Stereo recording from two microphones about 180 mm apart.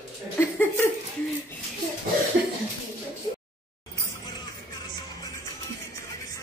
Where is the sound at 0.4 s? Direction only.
10° left (ahead or behind).